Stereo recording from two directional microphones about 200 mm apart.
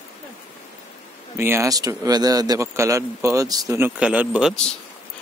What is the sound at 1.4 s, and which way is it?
Speech, 15° right (ahead or behind).